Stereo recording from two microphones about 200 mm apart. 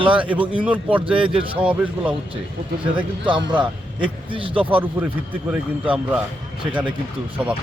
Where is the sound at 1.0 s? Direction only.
25° right (ahead or behind).